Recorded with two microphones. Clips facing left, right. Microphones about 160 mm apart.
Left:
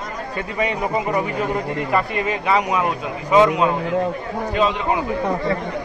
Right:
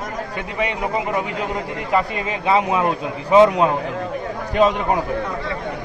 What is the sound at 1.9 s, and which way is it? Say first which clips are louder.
A man's voice: right 1 dB; 25° right (ahead or behind).